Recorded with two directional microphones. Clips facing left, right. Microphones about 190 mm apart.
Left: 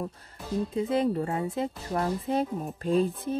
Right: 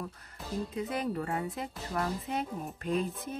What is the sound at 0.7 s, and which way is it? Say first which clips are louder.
Speech: left 8 dB; 25° left (ahead or behind).